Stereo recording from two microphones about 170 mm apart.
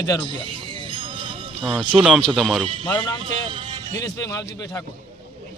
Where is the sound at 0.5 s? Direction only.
30° right (ahead or behind).